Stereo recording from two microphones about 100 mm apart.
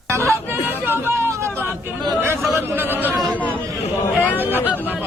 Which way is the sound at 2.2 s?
25° right (ahead or behind).